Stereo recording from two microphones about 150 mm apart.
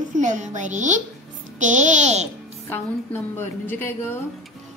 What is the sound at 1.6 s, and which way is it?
Speech, 55° right (ahead or behind).